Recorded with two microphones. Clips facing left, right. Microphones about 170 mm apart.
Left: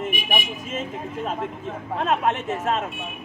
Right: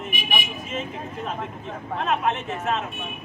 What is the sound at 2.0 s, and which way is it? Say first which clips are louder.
Speech: left 2 dB; 45° left (ahead or behind).